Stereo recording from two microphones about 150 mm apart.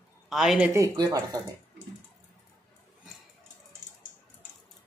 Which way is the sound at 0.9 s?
25° right (ahead or behind).